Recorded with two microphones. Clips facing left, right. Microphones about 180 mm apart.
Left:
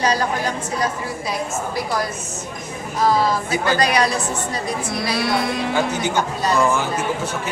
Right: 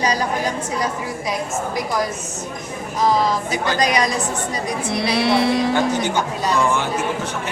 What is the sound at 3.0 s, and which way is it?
A woman's voice, 15° right (ahead or behind).